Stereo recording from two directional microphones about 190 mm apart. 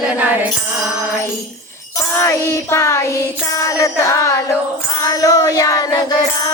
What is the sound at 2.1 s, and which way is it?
Music, 15° left (ahead or behind).